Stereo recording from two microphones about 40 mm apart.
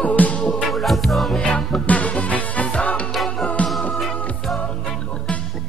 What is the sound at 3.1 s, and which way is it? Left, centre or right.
Music, centre.